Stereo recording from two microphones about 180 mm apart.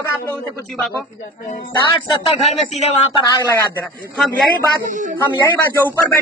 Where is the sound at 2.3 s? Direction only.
35° left (ahead or behind).